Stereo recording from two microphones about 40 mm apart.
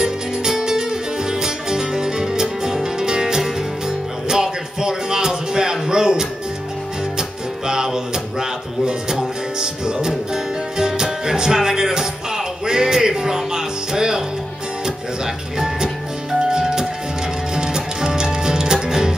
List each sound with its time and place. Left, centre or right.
0.0 s music: centre
15.6 s music: centre